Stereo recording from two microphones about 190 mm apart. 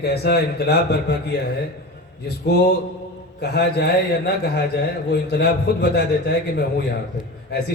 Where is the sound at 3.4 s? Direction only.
60° left (ahead or behind).